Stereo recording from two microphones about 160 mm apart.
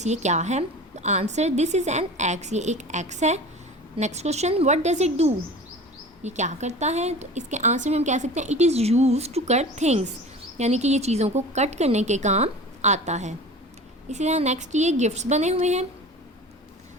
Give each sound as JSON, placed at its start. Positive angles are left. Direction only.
{"t": 0.0, "sound": "a woman's voice", "side_deg": -45}